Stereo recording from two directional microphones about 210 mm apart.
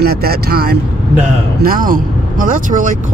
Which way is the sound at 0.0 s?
50° right (ahead or behind).